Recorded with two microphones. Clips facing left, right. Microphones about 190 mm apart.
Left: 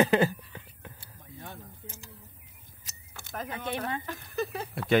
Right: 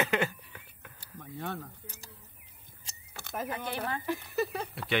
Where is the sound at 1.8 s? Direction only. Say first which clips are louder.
Left 3 dB; 40° right (ahead or behind).